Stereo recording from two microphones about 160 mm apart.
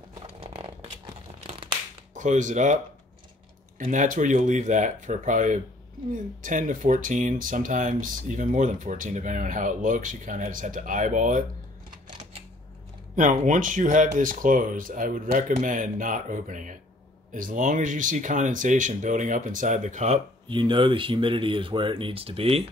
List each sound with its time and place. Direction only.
0.2 s a sound: 35° right (ahead or behind)
2.1 s speech: 55° right (ahead or behind)
13.1 s speech: 55° right (ahead or behind)
20.4 s speech: 30° right (ahead or behind)